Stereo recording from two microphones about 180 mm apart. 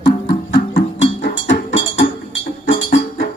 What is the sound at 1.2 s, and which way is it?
Music, 65° left (ahead or behind).